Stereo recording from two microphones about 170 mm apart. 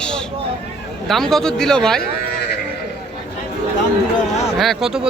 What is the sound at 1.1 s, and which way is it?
Speech, centre (ahead or behind).